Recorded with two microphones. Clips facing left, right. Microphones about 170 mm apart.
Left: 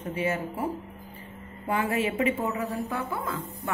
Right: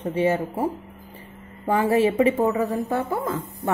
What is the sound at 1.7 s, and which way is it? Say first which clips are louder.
Speech: right 8 dB; 35° right (ahead or behind).